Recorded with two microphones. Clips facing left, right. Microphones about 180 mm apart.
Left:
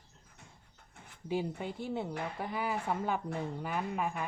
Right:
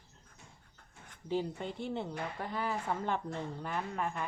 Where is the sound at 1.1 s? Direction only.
10° left (ahead or behind).